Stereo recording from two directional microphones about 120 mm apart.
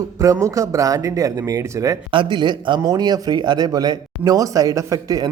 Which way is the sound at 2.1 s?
45° right (ahead or behind).